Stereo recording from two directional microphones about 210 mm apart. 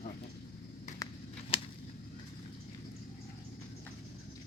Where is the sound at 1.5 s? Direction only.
25° left (ahead or behind).